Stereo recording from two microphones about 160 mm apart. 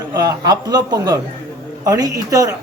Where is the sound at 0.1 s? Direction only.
20° right (ahead or behind).